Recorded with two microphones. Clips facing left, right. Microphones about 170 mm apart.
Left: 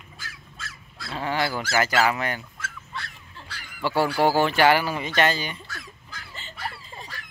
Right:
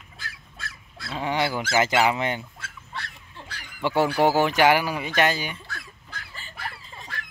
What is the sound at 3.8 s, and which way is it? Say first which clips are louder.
Speech: right 1 dB; 20° right (ahead or behind).